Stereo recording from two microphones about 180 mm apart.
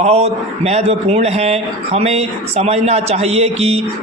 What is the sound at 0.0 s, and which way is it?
A man's voice, 35° right (ahead or behind).